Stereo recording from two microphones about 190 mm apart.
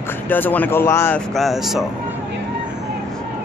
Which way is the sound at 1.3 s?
Centre (ahead or behind).